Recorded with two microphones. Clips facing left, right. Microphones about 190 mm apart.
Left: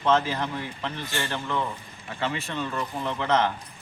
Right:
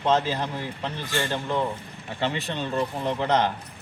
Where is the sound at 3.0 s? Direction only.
15° right (ahead or behind).